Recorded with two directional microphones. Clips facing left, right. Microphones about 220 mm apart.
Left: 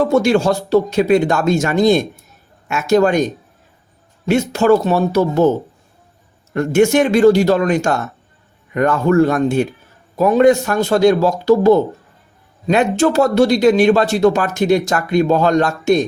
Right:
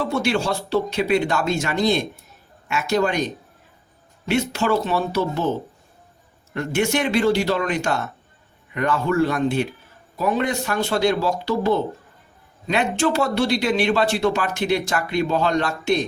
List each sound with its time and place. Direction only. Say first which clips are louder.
0.0 s speech: left 8 dB; 45° left (ahead or behind)